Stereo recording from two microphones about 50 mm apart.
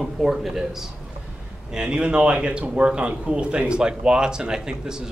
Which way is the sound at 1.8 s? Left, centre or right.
Right.